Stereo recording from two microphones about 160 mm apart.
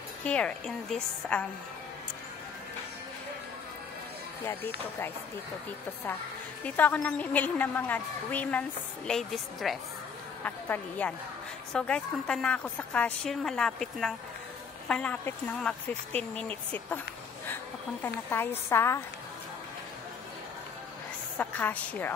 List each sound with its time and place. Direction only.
0.2 s a woman's voice: 5° left (ahead or behind)
4.5 s a woman's voice: 15° left (ahead or behind)
6.6 s a woman's voice: 10° left (ahead or behind)
18.0 s a woman's voice: 15° left (ahead or behind)
21.4 s a woman's voice: 10° left (ahead or behind)